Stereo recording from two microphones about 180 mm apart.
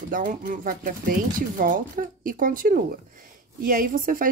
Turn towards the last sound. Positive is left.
turn(degrees=-50)  # may be behind; listen again after turning